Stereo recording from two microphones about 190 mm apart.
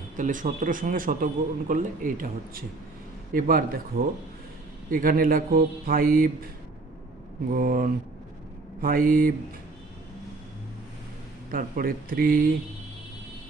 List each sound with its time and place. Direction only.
0.2 s a man's voice: 40° right (ahead or behind)
7.5 s a man's voice: 50° right (ahead or behind)
11.5 s a man's voice: 50° right (ahead or behind)